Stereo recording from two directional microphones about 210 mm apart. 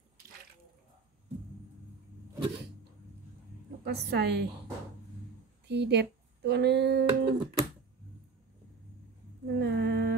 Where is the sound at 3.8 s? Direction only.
50° right (ahead or behind).